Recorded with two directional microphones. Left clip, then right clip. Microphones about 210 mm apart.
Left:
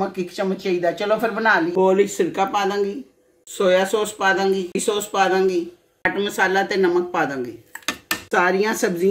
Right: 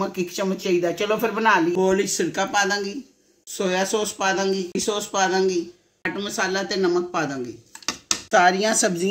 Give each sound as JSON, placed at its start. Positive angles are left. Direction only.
{"t": 0.0, "sound": "speech", "side_deg": -45}